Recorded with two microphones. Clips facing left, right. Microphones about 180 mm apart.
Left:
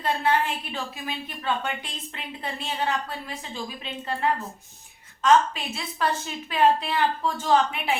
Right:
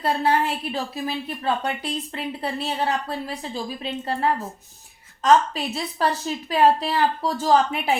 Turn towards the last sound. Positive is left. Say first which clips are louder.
# right 3 dB
turn(degrees=-40)  # may be behind; listen again after turning